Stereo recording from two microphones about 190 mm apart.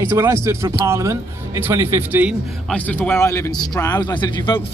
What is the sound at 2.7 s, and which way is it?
A man's voice, 5° left (ahead or behind).